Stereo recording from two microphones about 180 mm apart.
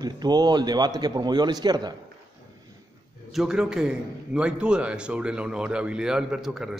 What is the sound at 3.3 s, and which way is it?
A man's voice, centre (ahead or behind).